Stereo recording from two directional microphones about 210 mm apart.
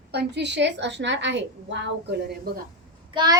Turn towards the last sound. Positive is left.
turn(degrees=-20)  # may be behind; listen again after turning